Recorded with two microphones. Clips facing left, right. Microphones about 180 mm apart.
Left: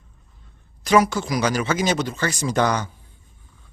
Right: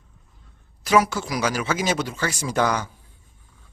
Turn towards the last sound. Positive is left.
turn(degrees=-5)  # may be behind; listen again after turning